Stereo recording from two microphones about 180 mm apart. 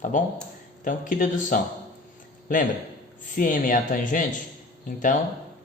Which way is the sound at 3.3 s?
50° left (ahead or behind).